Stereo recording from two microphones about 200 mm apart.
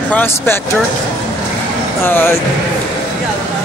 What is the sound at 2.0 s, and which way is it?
Speech, 10° left (ahead or behind).